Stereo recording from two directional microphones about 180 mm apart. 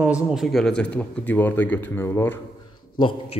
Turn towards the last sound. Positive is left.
turn(degrees=25)  # may be behind; listen again after turning